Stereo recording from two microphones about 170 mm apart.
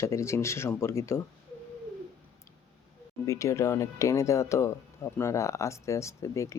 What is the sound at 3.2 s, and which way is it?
Speech, 20° left (ahead or behind).